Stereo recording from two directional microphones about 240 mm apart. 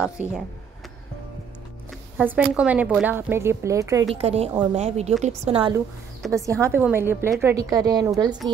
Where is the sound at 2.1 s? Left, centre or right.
Centre.